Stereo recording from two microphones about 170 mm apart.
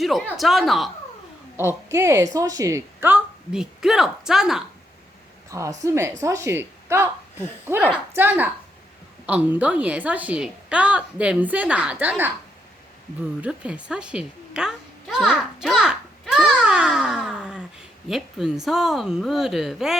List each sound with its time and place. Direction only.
0.0 s speech: centre (ahead or behind)
1.5 s a woman's voice: 15° right (ahead or behind)
5.5 s a woman's voice: 20° right (ahead or behind)
13.4 s a child's voice: 5° right (ahead or behind)